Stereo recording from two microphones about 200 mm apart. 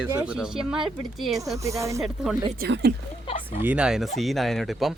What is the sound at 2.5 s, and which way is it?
Speech, 55° right (ahead or behind).